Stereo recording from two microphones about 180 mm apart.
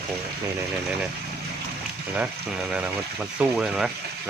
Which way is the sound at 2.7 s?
5° right (ahead or behind).